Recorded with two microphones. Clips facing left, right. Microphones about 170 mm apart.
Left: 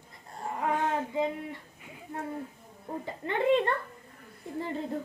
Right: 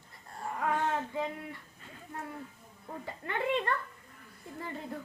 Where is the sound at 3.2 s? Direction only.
25° left (ahead or behind).